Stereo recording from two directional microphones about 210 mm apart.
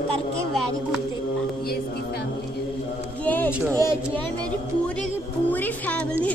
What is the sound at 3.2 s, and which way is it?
Speech, 10° left (ahead or behind).